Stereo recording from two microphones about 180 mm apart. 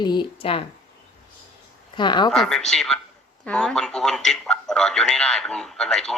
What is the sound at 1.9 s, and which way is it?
Speech, 25° left (ahead or behind).